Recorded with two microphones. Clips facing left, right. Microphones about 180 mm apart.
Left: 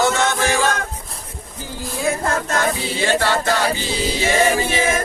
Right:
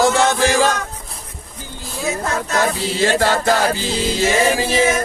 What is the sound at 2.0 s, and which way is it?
Music, 55° left (ahead or behind).